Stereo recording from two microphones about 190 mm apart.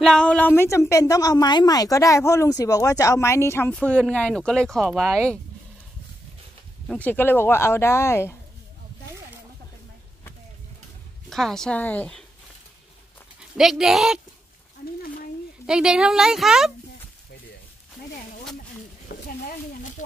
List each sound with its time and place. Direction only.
0.0 s a woman's voice: 5° left (ahead or behind)
6.9 s a woman's voice: 10° left (ahead or behind)
11.2 s speech: centre (ahead or behind)
13.4 s speech: centre (ahead or behind)
15.6 s speech: 5° right (ahead or behind)
19.1 s stir: 50° left (ahead or behind)
20.0 s a sound: 40° left (ahead or behind)